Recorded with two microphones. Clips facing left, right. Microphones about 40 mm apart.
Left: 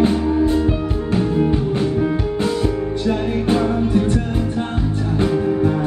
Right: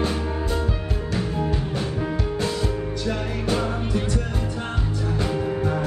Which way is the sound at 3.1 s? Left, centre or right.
Left.